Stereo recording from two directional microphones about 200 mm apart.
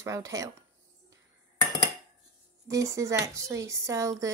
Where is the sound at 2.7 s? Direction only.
15° right (ahead or behind).